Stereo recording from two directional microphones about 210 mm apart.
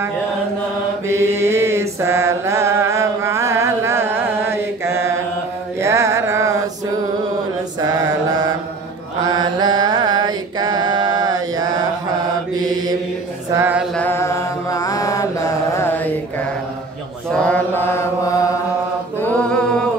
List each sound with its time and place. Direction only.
1.0 s mantra: 10° right (ahead or behind)
7.9 s mantra: 20° right (ahead or behind)
13.5 s a sound: 10° right (ahead or behind)
13.9 s mantra: 10° left (ahead or behind)
17.3 s mantra: 5° left (ahead or behind)